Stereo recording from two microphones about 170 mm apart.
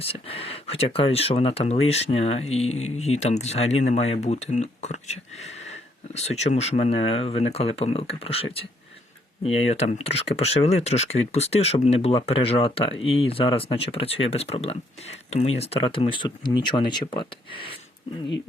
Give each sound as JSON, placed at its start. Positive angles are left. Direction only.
{"t": 0.0, "sound": "speech", "side_deg": 35}